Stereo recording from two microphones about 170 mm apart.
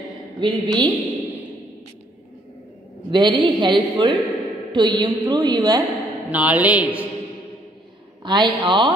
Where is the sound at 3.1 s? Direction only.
25° right (ahead or behind).